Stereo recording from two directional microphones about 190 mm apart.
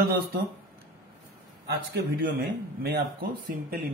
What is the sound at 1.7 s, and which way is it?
Speech, 60° right (ahead or behind).